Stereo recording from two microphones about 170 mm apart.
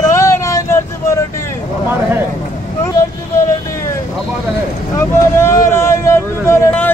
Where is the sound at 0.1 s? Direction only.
15° left (ahead or behind).